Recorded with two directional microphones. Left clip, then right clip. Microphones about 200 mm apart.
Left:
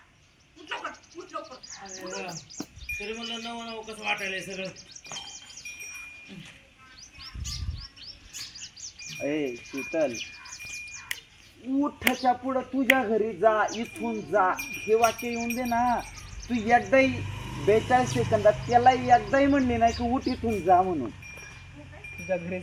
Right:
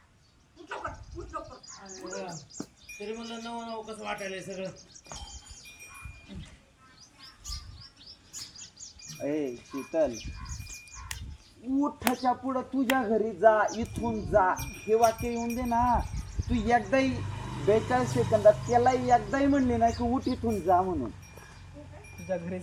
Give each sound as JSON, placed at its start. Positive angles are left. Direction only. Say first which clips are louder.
{"t": 2.6, "sound": "music", "louder": "left 3 dB", "side_deg": -50}
{"t": 3.2, "sound": "bird", "louder": "left 3 dB", "side_deg": -10}
{"t": 9.2, "sound": "speech", "louder": "left 2 dB", "side_deg": 30}
{"t": 11.9, "sound": "speech", "louder": "left 3 dB", "side_deg": 30}
{"t": 22.3, "sound": "speech", "louder": "left 3 dB", "side_deg": 25}